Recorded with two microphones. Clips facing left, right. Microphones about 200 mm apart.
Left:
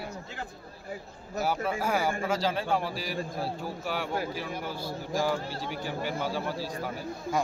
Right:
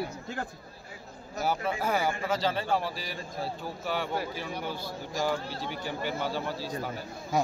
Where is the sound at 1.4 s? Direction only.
5° left (ahead or behind).